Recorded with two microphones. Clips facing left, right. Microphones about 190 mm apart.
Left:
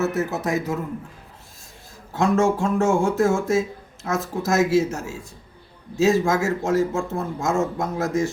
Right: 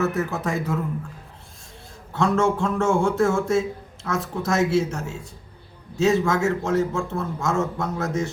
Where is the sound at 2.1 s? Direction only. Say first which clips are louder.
Left 1 dB; 10° left (ahead or behind).